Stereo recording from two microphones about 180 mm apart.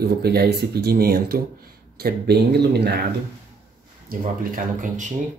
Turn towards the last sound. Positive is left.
turn(degrees=-45)  # may be behind; listen again after turning